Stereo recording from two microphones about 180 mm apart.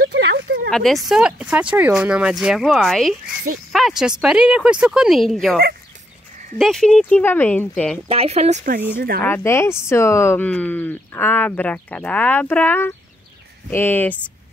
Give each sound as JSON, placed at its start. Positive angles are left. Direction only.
{"t": 0.1, "sound": "a sound", "side_deg": -70}
{"t": 0.7, "sound": "speech", "side_deg": 0}
{"t": 6.6, "sound": "speech", "side_deg": 5}
{"t": 8.1, "sound": "speech", "side_deg": -35}
{"t": 9.2, "sound": "speech", "side_deg": 15}